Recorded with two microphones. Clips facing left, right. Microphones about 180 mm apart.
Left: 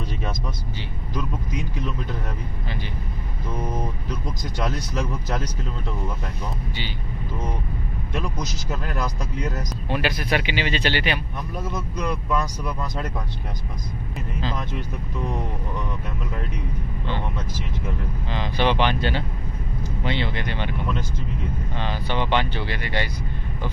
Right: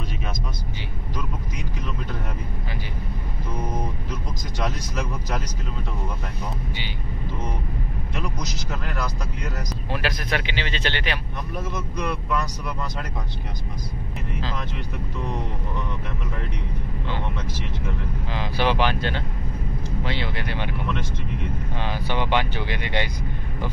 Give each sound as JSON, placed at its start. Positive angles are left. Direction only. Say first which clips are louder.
{"t": 9.8, "sound": "speech", "louder": "left 3 dB", "side_deg": 0}
{"t": 10.3, "sound": "speech", "louder": "left 4 dB", "side_deg": 10}
{"t": 18.3, "sound": "speech", "louder": "left 1 dB", "side_deg": -5}
{"t": 21.7, "sound": "speech", "louder": "left 1 dB", "side_deg": -10}